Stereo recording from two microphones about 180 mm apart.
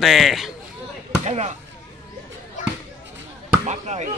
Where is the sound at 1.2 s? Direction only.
40° right (ahead or behind).